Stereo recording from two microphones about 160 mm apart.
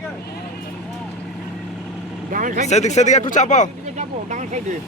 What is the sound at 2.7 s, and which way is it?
Speech, 45° left (ahead or behind).